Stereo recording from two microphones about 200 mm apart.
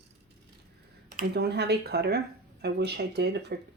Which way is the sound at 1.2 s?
55° right (ahead or behind).